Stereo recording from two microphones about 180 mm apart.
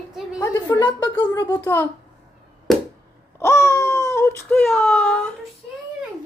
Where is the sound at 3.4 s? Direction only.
15° left (ahead or behind).